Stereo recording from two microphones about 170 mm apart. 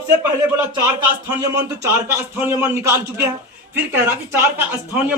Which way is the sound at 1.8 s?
15° right (ahead or behind).